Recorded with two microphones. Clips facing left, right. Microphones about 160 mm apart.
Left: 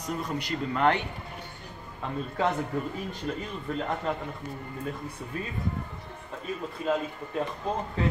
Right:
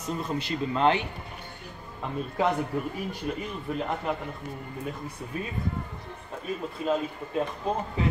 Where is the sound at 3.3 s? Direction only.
15° right (ahead or behind).